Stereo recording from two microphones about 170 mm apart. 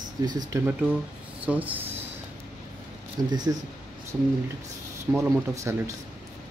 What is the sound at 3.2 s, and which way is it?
Speech, 25° right (ahead or behind).